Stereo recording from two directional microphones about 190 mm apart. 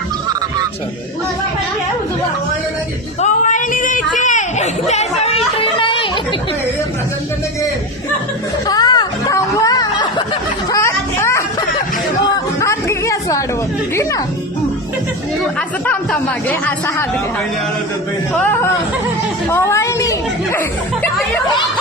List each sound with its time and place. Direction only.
3.2 s a sound: 40° left (ahead or behind)
8.6 s a sound: 20° left (ahead or behind)
12.5 s chatter: 15° left (ahead or behind)
13.9 s speech: 15° left (ahead or behind)
16.5 s speech: 10° left (ahead or behind)
19.5 s speech: 15° left (ahead or behind)